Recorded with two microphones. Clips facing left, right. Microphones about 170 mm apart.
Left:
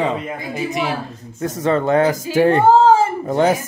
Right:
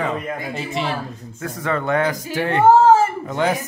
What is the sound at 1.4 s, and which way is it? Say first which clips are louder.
Speech: left 6 dB; 25° left (ahead or behind).